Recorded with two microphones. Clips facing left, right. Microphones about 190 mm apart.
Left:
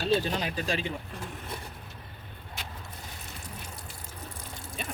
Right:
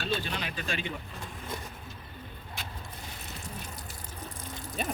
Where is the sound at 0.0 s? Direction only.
40° left (ahead or behind).